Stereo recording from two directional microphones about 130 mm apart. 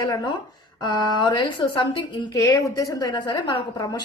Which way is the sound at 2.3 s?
25° left (ahead or behind).